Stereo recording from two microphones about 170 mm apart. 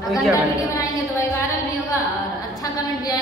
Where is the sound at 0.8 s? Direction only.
15° left (ahead or behind).